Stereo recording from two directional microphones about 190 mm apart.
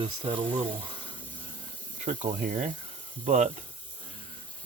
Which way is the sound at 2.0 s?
40° right (ahead or behind).